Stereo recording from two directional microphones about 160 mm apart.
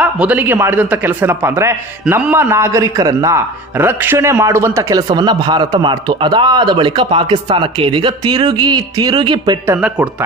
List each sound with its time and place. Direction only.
0.0 s a man's voice: 10° right (ahead or behind); by 9.6 s 30° right (ahead or behind)
9.8 s speech: 10° right (ahead or behind)